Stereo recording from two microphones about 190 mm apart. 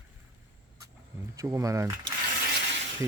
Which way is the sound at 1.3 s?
15° right (ahead or behind).